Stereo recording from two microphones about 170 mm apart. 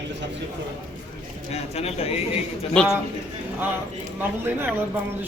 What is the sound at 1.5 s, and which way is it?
Speech, 40° left (ahead or behind).